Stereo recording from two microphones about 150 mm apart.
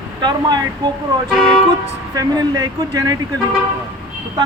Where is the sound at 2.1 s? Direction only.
25° right (ahead or behind).